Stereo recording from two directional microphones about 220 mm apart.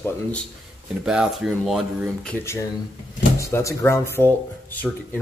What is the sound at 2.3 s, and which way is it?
Speech, 10° left (ahead or behind).